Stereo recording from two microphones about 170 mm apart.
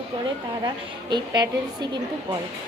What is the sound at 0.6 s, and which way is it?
A woman's voice, 25° right (ahead or behind).